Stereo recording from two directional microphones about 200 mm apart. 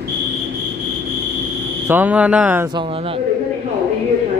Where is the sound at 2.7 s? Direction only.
25° right (ahead or behind).